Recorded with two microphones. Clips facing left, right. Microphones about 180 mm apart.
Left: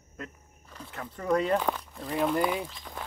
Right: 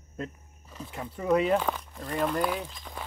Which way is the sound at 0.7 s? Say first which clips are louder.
Right 3 dB; 10° right (ahead or behind).